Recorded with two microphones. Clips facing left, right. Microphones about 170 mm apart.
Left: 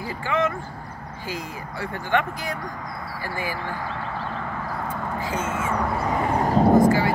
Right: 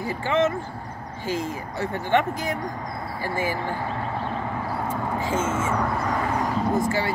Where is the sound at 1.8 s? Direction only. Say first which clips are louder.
Right 2 dB; 20° right (ahead or behind).